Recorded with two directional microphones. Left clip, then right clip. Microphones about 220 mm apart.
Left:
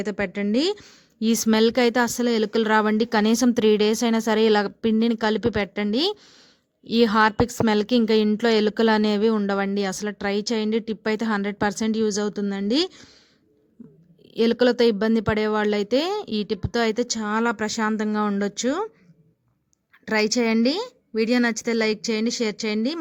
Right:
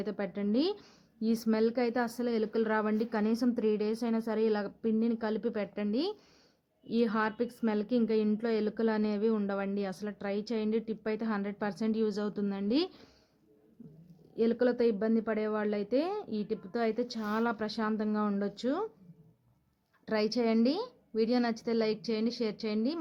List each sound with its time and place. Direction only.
0.0 s a woman's voice: 40° left (ahead or behind)
14.3 s a woman's voice: 45° left (ahead or behind)
20.1 s a woman's voice: 45° left (ahead or behind)